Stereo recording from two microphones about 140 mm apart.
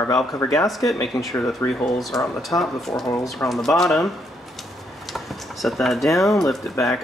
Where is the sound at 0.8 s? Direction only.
25° left (ahead or behind).